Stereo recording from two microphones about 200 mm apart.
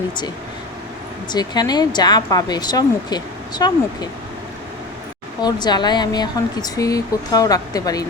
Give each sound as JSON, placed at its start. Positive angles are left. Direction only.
{"t": 1.3, "sound": "speech", "side_deg": 20}
{"t": 5.4, "sound": "speech", "side_deg": 20}